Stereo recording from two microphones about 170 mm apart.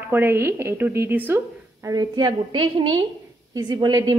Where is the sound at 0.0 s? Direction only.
10° right (ahead or behind).